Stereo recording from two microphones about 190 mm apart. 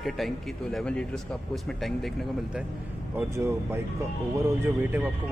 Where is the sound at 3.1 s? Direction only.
10° right (ahead or behind).